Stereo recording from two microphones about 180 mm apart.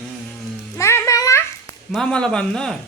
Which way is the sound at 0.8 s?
15° left (ahead or behind).